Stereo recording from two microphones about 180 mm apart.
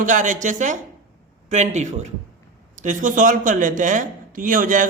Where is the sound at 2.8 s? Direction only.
45° right (ahead or behind).